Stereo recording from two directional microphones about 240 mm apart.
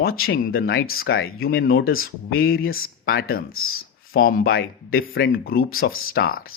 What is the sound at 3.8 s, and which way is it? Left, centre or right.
Speech, left.